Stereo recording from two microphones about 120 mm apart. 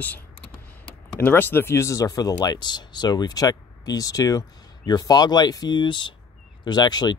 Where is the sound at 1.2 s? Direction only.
15° left (ahead or behind).